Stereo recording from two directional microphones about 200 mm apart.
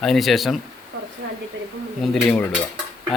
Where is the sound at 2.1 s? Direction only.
Centre (ahead or behind).